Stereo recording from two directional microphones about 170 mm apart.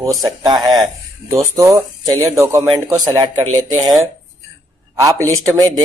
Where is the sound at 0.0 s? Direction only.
20° right (ahead or behind).